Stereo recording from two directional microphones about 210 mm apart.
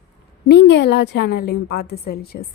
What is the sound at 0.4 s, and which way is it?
A woman's voice, 55° left (ahead or behind).